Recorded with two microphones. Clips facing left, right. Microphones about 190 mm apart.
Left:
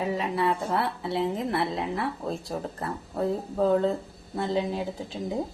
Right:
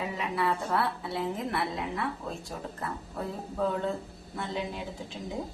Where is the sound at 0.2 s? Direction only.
25° left (ahead or behind).